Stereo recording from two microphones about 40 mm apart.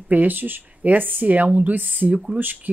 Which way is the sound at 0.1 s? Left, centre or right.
Right.